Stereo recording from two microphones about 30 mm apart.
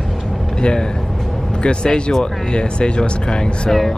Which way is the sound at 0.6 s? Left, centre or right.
Left.